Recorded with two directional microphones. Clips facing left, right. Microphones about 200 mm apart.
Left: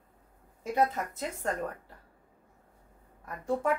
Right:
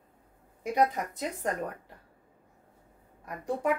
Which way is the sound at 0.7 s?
15° right (ahead or behind).